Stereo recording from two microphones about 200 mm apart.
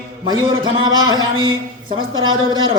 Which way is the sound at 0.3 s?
25° right (ahead or behind).